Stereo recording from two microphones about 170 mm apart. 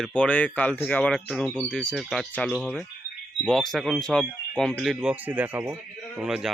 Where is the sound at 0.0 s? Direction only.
5° left (ahead or behind).